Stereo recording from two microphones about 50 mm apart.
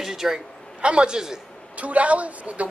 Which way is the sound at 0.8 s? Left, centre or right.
Centre.